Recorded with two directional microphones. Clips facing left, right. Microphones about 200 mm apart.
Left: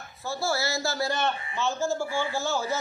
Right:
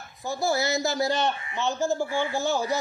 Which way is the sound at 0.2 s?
15° right (ahead or behind).